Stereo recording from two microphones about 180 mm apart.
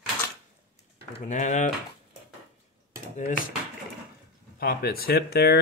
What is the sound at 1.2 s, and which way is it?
Speech, 40° left (ahead or behind).